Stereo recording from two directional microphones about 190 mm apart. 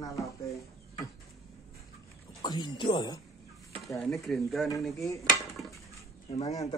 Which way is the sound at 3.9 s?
Centre (ahead or behind).